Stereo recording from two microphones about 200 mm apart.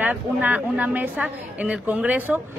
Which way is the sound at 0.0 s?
10° right (ahead or behind).